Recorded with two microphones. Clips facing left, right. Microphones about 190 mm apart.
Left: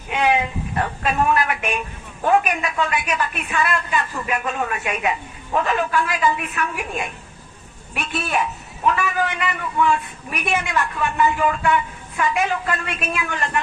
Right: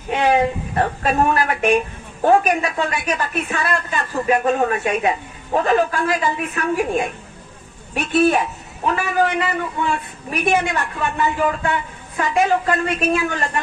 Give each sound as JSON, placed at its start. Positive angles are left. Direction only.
{"t": 0.1, "sound": "a woman's voice", "side_deg": -40}